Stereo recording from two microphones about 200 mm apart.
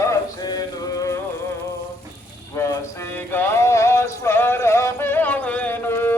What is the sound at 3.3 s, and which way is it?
Music, 10° left (ahead or behind).